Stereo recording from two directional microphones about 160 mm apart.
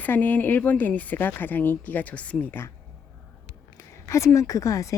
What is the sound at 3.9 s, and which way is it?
Speech, 20° left (ahead or behind).